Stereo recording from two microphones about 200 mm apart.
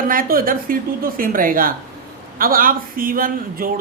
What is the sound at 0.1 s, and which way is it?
A man's voice, 45° right (ahead or behind).